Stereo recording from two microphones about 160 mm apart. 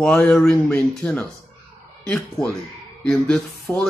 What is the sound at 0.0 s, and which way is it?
Speech, 5° left (ahead or behind).